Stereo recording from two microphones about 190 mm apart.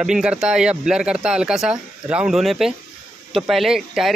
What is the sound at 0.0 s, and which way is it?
Speech, 5° right (ahead or behind).